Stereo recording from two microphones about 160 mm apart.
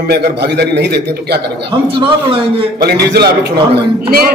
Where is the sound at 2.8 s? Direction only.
85° right.